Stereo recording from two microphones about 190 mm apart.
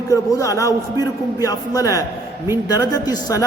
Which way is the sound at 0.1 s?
15° left (ahead or behind).